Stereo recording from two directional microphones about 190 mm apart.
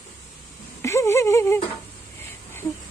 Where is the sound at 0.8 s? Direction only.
15° left (ahead or behind).